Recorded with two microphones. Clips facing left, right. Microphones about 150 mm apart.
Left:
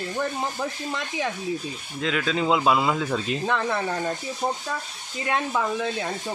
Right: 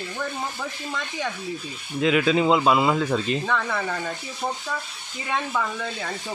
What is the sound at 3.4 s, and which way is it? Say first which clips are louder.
Speech: left 1 dB; 20° left (ahead or behind).